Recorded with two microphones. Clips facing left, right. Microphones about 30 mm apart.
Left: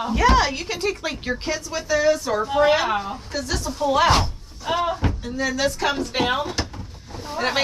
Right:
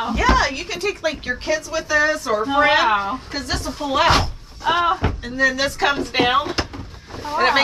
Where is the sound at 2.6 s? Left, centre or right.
Right.